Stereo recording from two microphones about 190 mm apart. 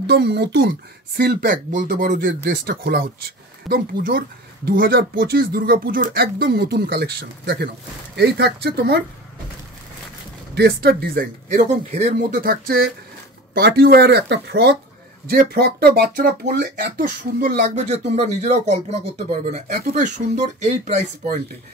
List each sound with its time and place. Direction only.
0.0 s speech: 60° right (ahead or behind)
10.5 s speech: 60° right (ahead or behind)
11.4 s speech: 35° right (ahead or behind)
12.4 s speech: 55° right (ahead or behind)